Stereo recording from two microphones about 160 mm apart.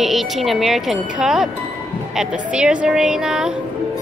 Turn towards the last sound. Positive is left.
turn(degrees=-5)  # may be behind; listen again after turning